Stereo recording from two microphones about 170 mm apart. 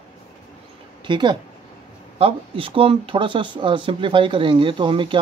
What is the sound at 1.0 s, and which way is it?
Speech, 25° right (ahead or behind).